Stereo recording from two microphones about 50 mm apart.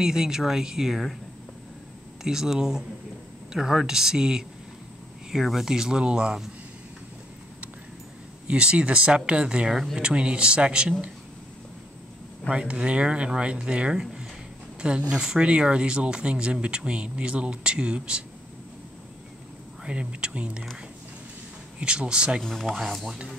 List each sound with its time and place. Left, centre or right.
0.0 s speech: centre
2.2 s speech: centre
8.5 s speech: centre
12.4 s speech: right
19.8 s speech: right
21.7 s speech: right
22.4 s speech: centre
22.7 s speech: centre